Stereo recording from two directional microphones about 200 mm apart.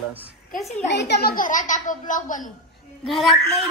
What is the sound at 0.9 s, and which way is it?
A woman's voice, 55° left (ahead or behind).